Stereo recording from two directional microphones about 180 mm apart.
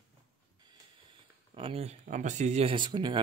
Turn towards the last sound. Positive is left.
turn(degrees=-25)  # may be behind; listen again after turning